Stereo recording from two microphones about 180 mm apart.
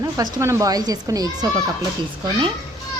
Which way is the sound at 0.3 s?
15° right (ahead or behind).